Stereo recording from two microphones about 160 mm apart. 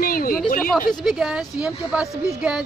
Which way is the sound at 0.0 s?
65° left (ahead or behind).